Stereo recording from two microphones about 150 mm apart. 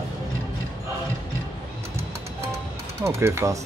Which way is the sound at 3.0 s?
20° right (ahead or behind).